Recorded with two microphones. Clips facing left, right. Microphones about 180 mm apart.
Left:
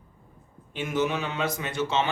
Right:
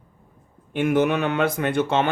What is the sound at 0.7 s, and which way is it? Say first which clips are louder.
Speech: right 7 dB; 55° right (ahead or behind).